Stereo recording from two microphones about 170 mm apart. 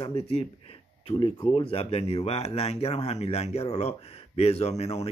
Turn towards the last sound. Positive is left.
turn(degrees=40)  # may be behind; listen again after turning